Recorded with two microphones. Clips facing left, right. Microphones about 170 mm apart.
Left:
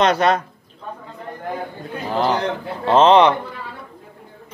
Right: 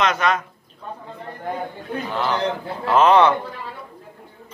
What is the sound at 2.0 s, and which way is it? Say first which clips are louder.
Speech: left 5 dB; 35° left (ahead or behind).